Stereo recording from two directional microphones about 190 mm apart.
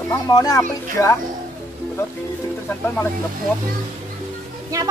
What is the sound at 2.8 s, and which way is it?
Speech, 10° left (ahead or behind).